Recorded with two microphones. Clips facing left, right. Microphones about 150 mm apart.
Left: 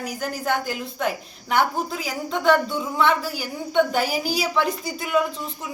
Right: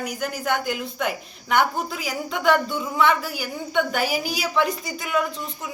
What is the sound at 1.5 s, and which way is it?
Speech, 35° left (ahead or behind).